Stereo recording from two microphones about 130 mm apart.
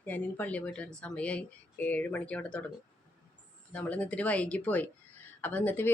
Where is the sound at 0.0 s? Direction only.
15° left (ahead or behind).